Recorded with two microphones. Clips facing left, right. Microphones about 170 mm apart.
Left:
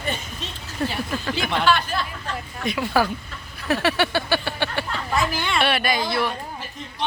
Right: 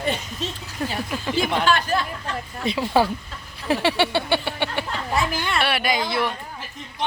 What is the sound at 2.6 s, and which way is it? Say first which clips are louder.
Speech: right 2 dB; 25° right (ahead or behind).